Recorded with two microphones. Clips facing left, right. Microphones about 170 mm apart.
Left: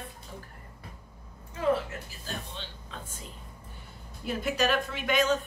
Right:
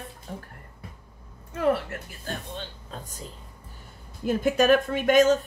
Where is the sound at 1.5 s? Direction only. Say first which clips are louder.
Right 3 dB; 65° right (ahead or behind).